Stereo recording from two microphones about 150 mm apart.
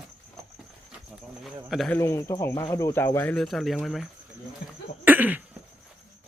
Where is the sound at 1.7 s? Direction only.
Centre (ahead or behind).